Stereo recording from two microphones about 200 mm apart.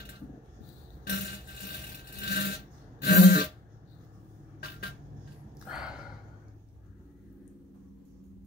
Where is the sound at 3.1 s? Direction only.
50° left (ahead or behind).